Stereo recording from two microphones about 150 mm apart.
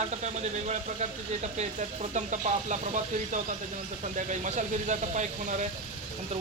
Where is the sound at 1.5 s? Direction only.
50° right (ahead or behind).